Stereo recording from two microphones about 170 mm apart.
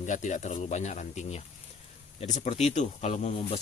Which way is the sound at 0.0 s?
45° left (ahead or behind).